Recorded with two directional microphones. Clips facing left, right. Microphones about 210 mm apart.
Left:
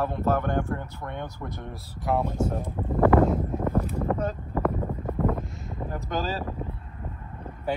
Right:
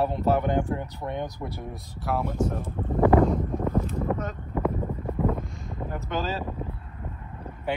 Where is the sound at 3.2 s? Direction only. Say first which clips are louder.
Even; 5° left (ahead or behind).